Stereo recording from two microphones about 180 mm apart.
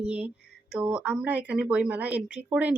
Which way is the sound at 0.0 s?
5° right (ahead or behind).